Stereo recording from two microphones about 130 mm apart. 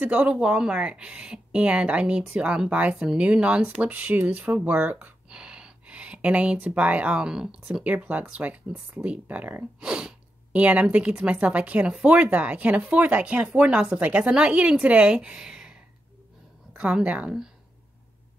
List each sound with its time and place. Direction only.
0.0 s speech: 10° right (ahead or behind)